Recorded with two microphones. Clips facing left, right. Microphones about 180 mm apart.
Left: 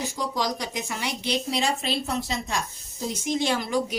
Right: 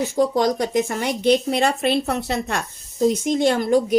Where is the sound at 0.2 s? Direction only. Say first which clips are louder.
Right 11 dB; 50° right (ahead or behind).